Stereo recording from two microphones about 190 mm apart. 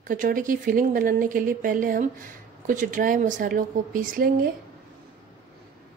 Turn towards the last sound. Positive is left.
turn(degrees=-50)  # may be behind; listen again after turning